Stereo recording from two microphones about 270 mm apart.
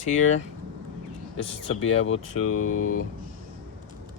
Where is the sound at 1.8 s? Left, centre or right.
Left.